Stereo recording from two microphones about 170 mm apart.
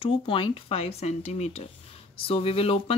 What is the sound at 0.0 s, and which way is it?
Speech, 30° left (ahead or behind).